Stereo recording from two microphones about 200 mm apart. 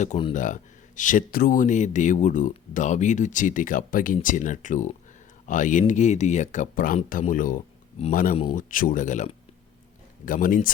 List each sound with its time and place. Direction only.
0.0 s speech: 30° left (ahead or behind)